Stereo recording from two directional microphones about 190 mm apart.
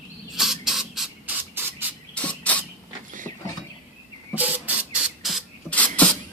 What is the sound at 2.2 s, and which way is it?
Cricket, 5° left (ahead or behind).